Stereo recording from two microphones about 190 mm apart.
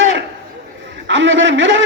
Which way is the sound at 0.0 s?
80° right.